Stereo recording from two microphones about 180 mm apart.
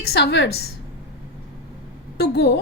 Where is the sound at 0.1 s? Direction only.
70° left (ahead or behind).